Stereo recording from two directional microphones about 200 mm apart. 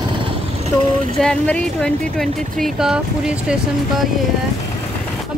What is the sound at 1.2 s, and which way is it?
Speech, 5° left (ahead or behind).